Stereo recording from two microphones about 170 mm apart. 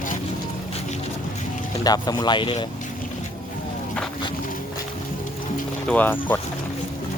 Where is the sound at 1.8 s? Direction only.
20° left (ahead or behind).